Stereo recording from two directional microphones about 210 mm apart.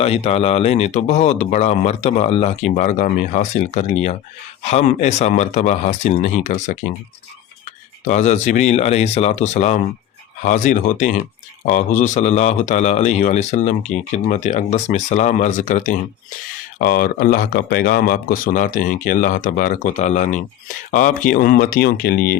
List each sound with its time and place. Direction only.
0.0 s speech: 30° left (ahead or behind)
8.0 s speech: 35° left (ahead or behind)